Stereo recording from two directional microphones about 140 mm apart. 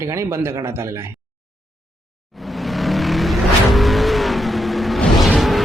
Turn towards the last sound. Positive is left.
turn(degrees=0)  # may be behind; listen again after turning